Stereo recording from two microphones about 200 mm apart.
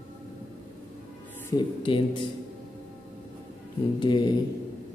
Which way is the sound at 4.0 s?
20° left (ahead or behind).